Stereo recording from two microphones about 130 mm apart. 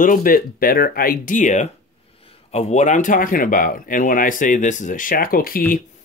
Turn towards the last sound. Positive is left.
turn(degrees=90)